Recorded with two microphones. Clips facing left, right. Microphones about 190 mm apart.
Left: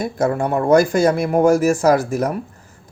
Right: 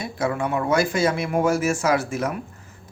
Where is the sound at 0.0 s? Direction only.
45° left (ahead or behind).